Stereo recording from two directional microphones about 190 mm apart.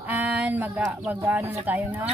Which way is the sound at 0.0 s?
10° right (ahead or behind).